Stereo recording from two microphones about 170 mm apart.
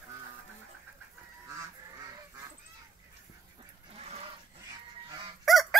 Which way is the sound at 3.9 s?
40° right (ahead or behind).